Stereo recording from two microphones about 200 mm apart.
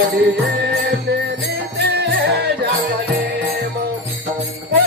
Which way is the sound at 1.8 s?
55° right (ahead or behind).